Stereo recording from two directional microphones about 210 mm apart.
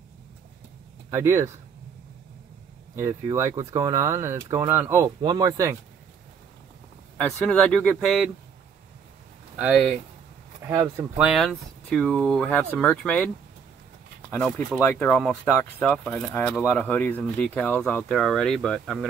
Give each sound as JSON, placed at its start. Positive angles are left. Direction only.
{"t": 1.1, "sound": "speech", "side_deg": -15}
{"t": 3.0, "sound": "speech", "side_deg": -15}
{"t": 7.2, "sound": "speech", "side_deg": 0}
{"t": 9.6, "sound": "speech", "side_deg": -5}
{"t": 10.7, "sound": "speech", "side_deg": -15}
{"t": 11.1, "sound": "speech", "side_deg": 0}
{"t": 14.3, "sound": "speech", "side_deg": 5}